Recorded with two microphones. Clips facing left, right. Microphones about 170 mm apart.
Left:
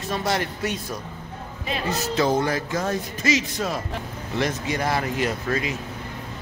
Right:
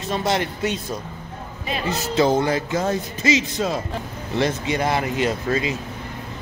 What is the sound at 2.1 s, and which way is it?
Speech, 25° right (ahead or behind).